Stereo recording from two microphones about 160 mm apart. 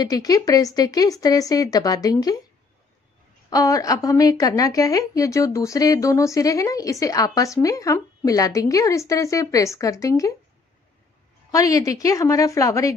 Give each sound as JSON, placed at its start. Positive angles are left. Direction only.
{"t": 0.0, "sound": "a woman's voice", "side_deg": 25}
{"t": 3.4, "sound": "a woman's voice", "side_deg": 20}
{"t": 11.5, "sound": "a woman's voice", "side_deg": 20}